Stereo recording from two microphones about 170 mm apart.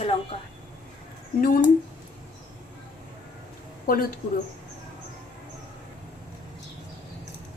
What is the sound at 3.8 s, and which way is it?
Speech, 60° left (ahead or behind).